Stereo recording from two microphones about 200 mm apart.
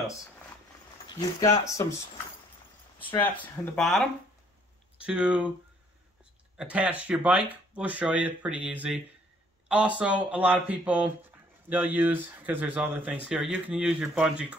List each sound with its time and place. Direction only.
1.0 s speech: 15° left (ahead or behind)
3.6 s speech: centre (ahead or behind)
6.5 s speech: 5° right (ahead or behind)